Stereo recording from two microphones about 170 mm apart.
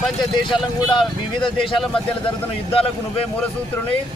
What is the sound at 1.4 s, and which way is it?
Speech, 30° left (ahead or behind).